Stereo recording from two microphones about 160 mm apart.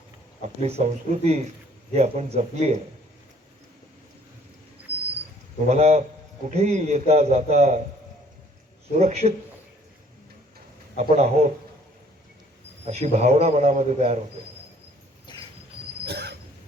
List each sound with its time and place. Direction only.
0.4 s a man's voice: 45° right (ahead or behind)
5.6 s a man's voice: 45° right (ahead or behind)
9.0 s a man's voice: 45° right (ahead or behind)
10.9 s a man's voice: 45° right (ahead or behind)
12.8 s a man's voice: 40° right (ahead or behind)
16.0 s a sound: 90° right